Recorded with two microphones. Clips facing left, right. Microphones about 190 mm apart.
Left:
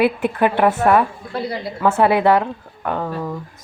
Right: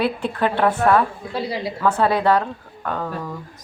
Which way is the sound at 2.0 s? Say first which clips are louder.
Left 3 dB; 15° left (ahead or behind).